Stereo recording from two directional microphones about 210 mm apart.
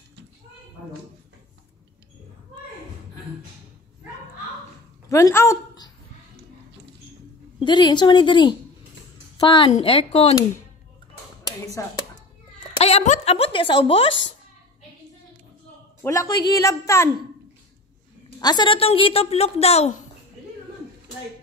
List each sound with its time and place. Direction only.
5.1 s a woman's voice: 15° left (ahead or behind)
7.5 s a woman's voice: 20° left (ahead or behind)
11.4 s a sound: 15° left (ahead or behind)
12.8 s a woman's voice: 30° left (ahead or behind)
16.0 s speech: 15° left (ahead or behind)
18.4 s a woman's voice: 20° left (ahead or behind)